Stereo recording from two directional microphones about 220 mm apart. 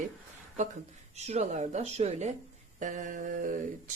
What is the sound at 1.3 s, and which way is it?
A woman's voice, 30° right (ahead or behind).